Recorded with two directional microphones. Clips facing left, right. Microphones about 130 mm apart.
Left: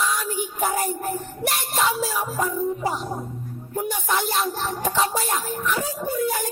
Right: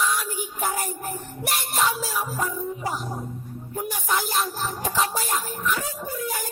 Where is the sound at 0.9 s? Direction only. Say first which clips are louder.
Left 5 dB; 40° left (ahead or behind).